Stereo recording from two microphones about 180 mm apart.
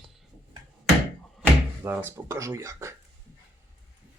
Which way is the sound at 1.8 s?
10° right (ahead or behind).